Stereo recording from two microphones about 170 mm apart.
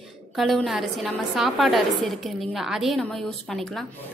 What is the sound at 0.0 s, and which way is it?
A woman's voice, centre (ahead or behind).